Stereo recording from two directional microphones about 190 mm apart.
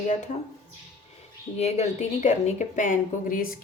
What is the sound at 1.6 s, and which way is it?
A woman's voice, 35° left (ahead or behind).